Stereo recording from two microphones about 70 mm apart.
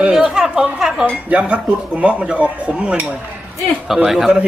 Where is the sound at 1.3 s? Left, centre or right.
Centre.